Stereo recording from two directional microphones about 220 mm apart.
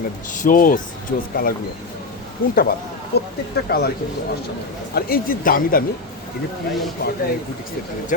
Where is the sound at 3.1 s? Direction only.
45° left (ahead or behind).